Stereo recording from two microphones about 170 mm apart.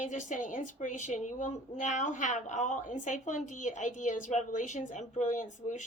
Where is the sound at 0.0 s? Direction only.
45° left (ahead or behind).